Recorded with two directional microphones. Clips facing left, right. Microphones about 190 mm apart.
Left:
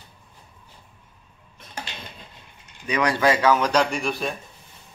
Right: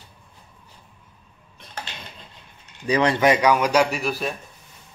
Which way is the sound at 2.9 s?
25° right (ahead or behind).